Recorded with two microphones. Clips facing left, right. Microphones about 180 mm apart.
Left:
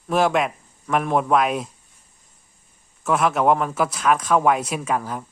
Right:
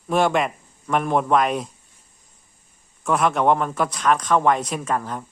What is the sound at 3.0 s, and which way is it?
Speech, centre (ahead or behind).